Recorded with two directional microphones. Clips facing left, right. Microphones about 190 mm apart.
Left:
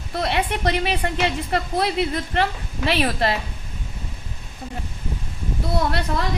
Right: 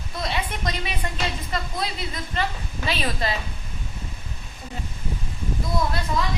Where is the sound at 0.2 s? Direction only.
65° left (ahead or behind).